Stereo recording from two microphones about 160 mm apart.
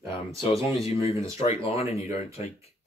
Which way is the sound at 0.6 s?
35° left (ahead or behind).